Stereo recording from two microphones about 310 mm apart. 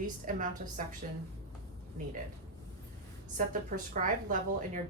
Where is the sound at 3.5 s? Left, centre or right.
Right.